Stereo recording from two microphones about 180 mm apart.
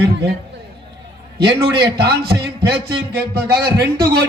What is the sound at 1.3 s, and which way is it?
A man's voice, 65° right (ahead or behind).